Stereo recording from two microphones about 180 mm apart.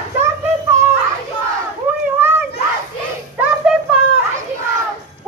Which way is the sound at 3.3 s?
5° right (ahead or behind).